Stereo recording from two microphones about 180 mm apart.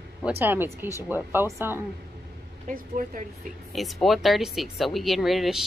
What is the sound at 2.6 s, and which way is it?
Speech, 50° right (ahead or behind).